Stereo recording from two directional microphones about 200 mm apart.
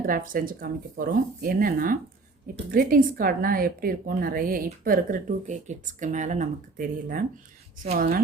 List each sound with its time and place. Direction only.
0.0 s a woman's voice: 45° right (ahead or behind)